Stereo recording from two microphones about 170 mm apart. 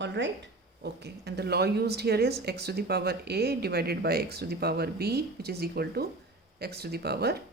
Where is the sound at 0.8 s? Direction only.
75° right (ahead or behind).